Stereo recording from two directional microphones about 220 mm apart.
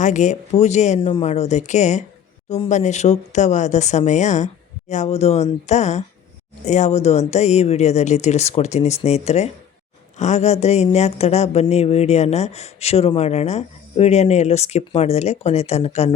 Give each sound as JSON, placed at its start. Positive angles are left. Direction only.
{"t": 0.0, "sound": "speech", "side_deg": 35}